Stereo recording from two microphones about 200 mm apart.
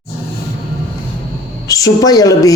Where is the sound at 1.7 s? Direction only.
15° left (ahead or behind).